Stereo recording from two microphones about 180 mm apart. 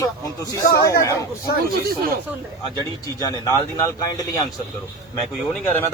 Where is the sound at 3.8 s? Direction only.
20° left (ahead or behind).